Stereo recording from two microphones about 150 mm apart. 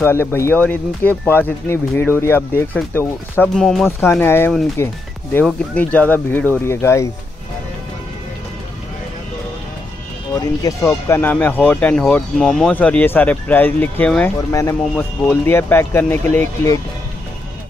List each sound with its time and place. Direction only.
0.0 s speech: 15° left (ahead or behind)
3.5 s speech: centre (ahead or behind)
4.0 s speech: 15° left (ahead or behind)
10.9 s speech: 15° left (ahead or behind)
14.5 s speech: 20° left (ahead or behind)
14.8 s speech: 5° left (ahead or behind)